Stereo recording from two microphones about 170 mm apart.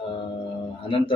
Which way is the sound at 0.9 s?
30° left (ahead or behind).